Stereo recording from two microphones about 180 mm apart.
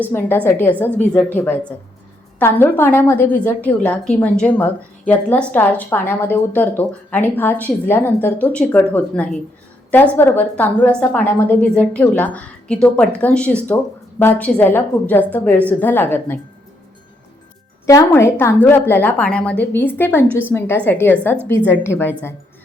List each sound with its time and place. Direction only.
0.0 s a woman's voice: 10° left (ahead or behind)
17.8 s a woman's voice: 20° left (ahead or behind)